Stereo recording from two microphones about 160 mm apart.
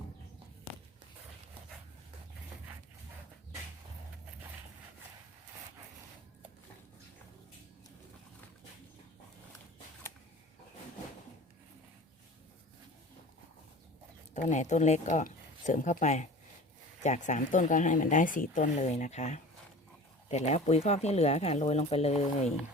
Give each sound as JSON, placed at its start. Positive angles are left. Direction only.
{"t": 14.3, "sound": "speech", "side_deg": 50}